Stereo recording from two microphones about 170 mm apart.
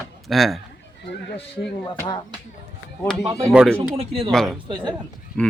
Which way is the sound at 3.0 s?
Centre (ahead or behind).